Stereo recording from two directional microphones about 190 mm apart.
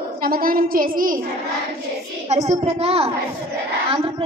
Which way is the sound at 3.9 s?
30° right (ahead or behind).